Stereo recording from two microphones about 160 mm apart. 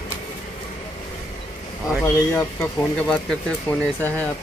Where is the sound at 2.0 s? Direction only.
15° left (ahead or behind).